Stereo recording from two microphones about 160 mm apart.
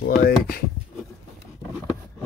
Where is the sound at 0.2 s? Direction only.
75° left (ahead or behind).